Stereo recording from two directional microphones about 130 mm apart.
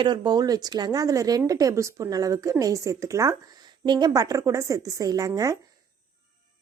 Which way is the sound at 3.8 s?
35° right (ahead or behind).